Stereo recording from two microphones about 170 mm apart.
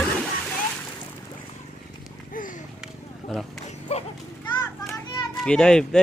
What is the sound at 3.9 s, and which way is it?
Children playing, 40° left (ahead or behind).